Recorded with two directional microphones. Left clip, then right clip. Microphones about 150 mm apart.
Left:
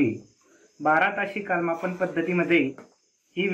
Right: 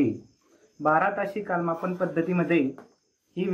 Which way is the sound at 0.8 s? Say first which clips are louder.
Left 1 dB; 55° right (ahead or behind).